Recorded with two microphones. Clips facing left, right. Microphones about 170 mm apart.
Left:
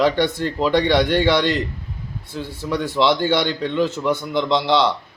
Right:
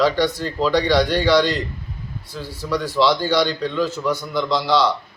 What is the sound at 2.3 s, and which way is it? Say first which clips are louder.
A man's voice: even; 20° left (ahead or behind).